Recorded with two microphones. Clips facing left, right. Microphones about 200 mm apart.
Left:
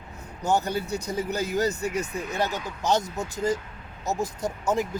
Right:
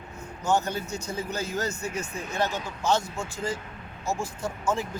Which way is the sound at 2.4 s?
15° left (ahead or behind).